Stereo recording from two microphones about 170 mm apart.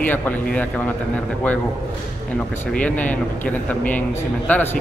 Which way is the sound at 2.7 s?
10° left (ahead or behind).